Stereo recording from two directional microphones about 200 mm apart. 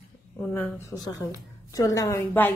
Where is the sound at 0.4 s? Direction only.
10° left (ahead or behind).